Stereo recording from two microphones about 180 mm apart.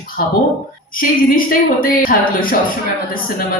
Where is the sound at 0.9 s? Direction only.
50° left (ahead or behind).